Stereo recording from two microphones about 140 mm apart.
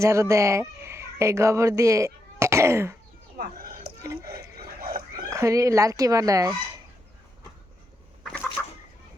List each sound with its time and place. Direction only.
0.0 s speech: 20° right (ahead or behind)
3.3 s a sound: 90° right
4.8 s dog: 90° right
5.3 s speech: 20° right (ahead or behind)
8.2 s fowl: 5° left (ahead or behind)